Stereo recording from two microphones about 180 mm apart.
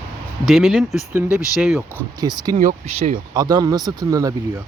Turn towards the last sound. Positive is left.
turn(degrees=-20)  # may be behind; listen again after turning